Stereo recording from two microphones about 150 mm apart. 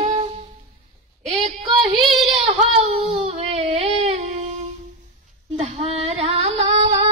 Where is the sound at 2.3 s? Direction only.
45° right (ahead or behind).